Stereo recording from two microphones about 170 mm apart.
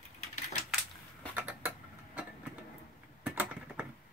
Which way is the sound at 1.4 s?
10° right (ahead or behind).